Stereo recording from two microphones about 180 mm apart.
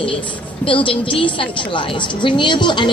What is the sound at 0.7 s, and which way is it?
Speech, 30° left (ahead or behind).